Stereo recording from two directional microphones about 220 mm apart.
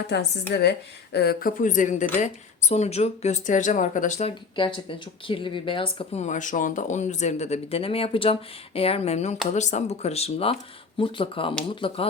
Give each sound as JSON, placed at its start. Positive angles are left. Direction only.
{"t": 0.1, "sound": "speech", "side_deg": 50}